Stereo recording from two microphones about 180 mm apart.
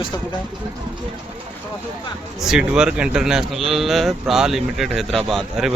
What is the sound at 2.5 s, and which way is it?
Speech, 5° right (ahead or behind).